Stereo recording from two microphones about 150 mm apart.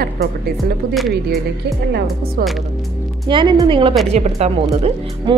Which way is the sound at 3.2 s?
30° right (ahead or behind).